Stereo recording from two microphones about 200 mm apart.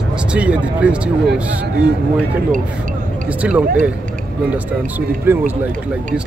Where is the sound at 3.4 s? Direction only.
5° right (ahead or behind).